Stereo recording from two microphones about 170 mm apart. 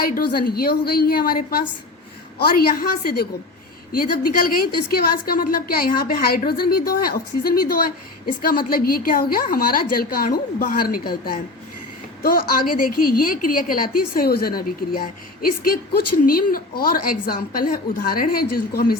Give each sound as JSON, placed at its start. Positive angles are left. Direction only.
{"t": 0.0, "sound": "a woman's voice", "side_deg": 60}